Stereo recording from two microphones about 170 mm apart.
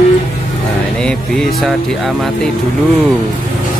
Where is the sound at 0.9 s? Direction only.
5° left (ahead or behind).